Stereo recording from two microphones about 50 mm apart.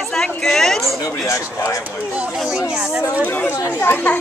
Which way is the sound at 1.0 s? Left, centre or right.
Left.